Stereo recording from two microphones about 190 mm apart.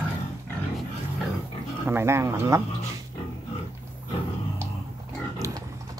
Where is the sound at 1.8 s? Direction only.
10° right (ahead or behind).